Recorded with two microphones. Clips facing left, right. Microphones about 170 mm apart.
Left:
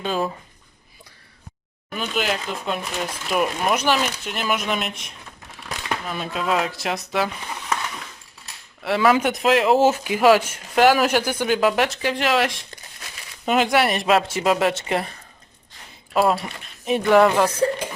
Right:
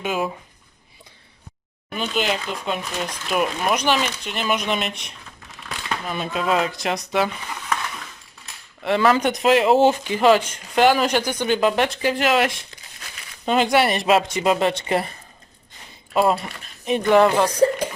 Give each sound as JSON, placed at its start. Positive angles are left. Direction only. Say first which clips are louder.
{"t": 0.0, "sound": "speech", "louder": "even", "side_deg": -10}
{"t": 2.0, "sound": "speech", "louder": "right 1 dB", "side_deg": 5}
{"t": 8.8, "sound": "speech", "louder": "even", "side_deg": 5}
{"t": 16.1, "sound": "speech", "louder": "even", "side_deg": 0}